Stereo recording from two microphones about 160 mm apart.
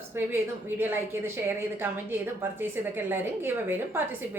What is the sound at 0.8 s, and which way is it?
A woman's voice, 15° right (ahead or behind).